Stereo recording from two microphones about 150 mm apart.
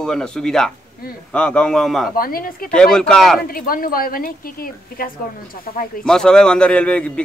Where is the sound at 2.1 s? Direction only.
75° left (ahead or behind).